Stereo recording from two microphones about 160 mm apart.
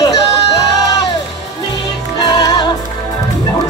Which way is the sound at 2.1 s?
25° left (ahead or behind).